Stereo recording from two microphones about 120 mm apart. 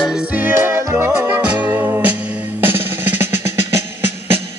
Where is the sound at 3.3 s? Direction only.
70° left (ahead or behind).